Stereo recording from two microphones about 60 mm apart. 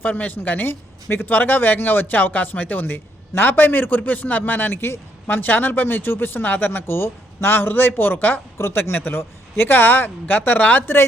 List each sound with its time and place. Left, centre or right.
0.0 s a woman's voice: left
5.4 s speech: left
8.5 s speech: left